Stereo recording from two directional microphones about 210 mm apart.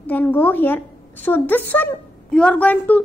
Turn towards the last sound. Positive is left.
turn(degrees=5)  # may be behind; listen again after turning